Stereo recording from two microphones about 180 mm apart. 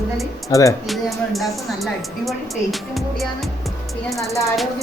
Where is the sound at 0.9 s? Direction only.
Centre (ahead or behind).